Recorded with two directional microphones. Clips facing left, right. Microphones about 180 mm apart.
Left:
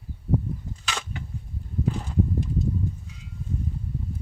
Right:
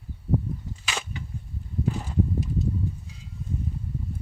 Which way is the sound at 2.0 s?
5° right (ahead or behind).